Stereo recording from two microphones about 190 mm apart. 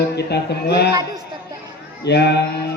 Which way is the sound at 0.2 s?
60° left (ahead or behind).